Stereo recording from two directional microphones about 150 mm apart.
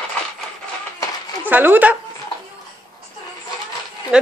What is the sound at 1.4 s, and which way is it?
Speech, 10° right (ahead or behind).